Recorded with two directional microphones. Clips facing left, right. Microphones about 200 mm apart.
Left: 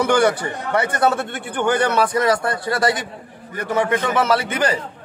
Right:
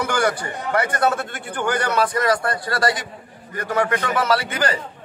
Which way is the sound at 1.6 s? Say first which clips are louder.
Left 3 dB; 20° left (ahead or behind).